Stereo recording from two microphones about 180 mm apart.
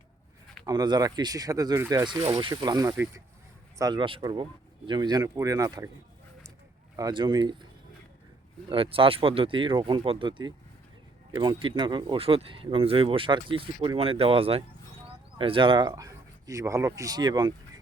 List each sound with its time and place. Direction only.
0.6 s speech: 20° right (ahead or behind)
6.9 s speech: 25° right (ahead or behind)
8.7 s speech: 30° right (ahead or behind)